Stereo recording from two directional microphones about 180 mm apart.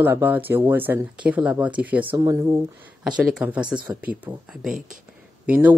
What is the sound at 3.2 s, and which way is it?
Speech, 5° right (ahead or behind).